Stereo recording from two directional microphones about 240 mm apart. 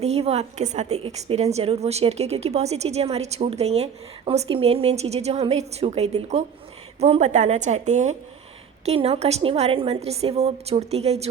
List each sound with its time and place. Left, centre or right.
0.0 s a woman's voice: right